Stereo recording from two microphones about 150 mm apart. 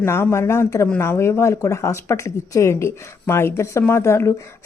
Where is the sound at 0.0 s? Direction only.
15° left (ahead or behind).